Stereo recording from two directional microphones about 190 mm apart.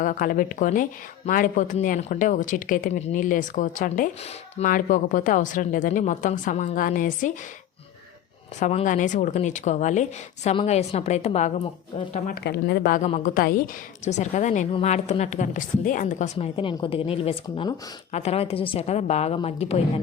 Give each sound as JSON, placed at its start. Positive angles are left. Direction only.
{"t": 0.0, "sound": "speech", "side_deg": 45}
{"t": 8.5, "sound": "a woman's voice", "side_deg": 40}
{"t": 12.3, "sound": "a woman's voice", "side_deg": 60}